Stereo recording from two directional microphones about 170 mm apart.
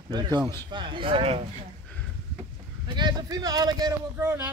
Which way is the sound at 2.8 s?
25° right (ahead or behind).